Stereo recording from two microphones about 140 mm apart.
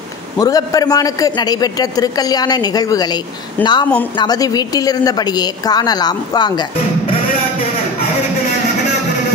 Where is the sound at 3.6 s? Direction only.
15° left (ahead or behind).